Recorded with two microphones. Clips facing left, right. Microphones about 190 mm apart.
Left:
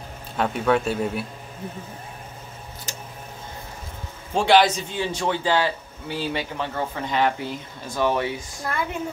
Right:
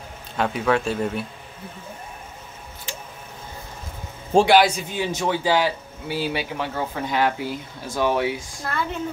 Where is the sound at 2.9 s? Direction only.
40° left (ahead or behind).